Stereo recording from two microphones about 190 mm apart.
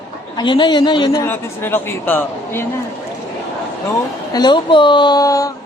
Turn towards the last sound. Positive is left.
turn(degrees=15)  # may be behind; listen again after turning